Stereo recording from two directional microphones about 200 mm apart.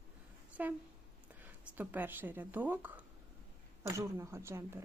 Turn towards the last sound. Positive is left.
turn(degrees=-15)  # may be behind; listen again after turning